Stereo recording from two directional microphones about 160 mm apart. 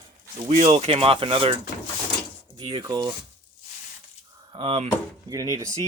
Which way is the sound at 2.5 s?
25° right (ahead or behind).